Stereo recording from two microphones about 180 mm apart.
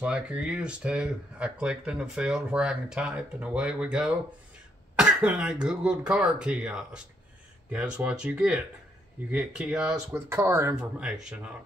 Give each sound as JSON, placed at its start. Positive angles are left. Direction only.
{"t": 0.0, "sound": "speech", "side_deg": -5}